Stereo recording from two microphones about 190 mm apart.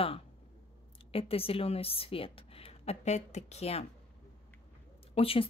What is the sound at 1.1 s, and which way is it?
Speech, 30° left (ahead or behind).